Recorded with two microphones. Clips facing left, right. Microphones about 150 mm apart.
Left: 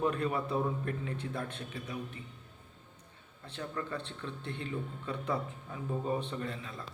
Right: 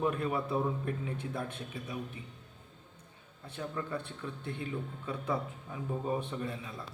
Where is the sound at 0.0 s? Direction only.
5° right (ahead or behind).